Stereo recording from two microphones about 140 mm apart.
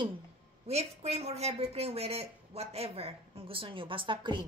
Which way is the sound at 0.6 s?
50° right (ahead or behind).